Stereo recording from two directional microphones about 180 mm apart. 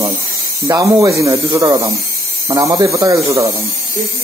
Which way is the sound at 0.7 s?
20° right (ahead or behind).